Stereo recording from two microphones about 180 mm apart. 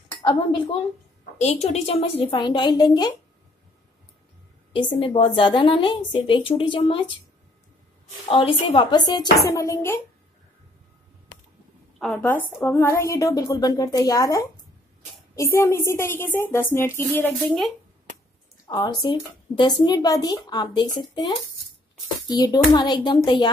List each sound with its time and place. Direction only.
0.2 s speech: 25° left (ahead or behind)
4.9 s speech: 30° left (ahead or behind)
8.3 s speech: 30° left (ahead or behind)
12.1 s a woman's voice: 10° left (ahead or behind)
18.7 s speech: 25° left (ahead or behind)
22.3 s speech: 20° left (ahead or behind)